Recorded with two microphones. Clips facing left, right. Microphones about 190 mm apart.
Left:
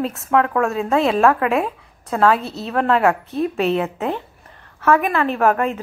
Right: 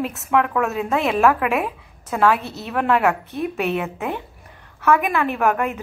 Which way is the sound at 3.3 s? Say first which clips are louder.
Left 4 dB; 15° right (ahead or behind).